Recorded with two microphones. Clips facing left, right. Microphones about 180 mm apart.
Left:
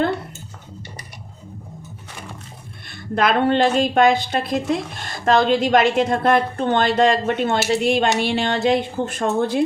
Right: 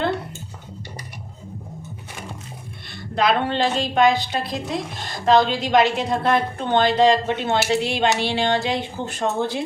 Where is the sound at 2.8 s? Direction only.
50° left (ahead or behind).